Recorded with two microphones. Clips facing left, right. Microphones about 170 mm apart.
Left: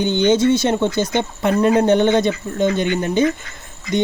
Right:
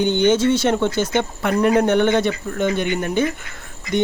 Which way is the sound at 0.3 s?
15° left (ahead or behind).